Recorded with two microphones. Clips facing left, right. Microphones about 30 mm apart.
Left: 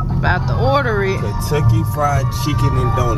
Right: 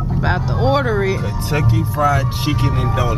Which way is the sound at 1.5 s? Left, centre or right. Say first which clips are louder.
Even; right.